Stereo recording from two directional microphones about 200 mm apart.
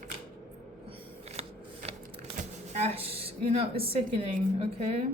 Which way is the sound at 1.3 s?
30° right (ahead or behind).